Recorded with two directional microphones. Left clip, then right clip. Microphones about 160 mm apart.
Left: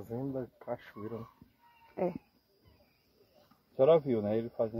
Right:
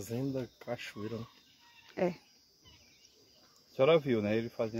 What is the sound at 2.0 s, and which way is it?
Speech, 25° right (ahead or behind).